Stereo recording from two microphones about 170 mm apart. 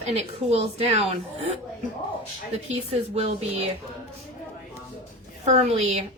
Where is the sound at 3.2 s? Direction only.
40° right (ahead or behind).